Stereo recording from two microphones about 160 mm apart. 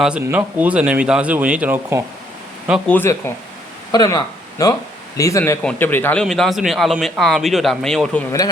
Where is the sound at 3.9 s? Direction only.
25° left (ahead or behind); by 8.2 s 5° left (ahead or behind).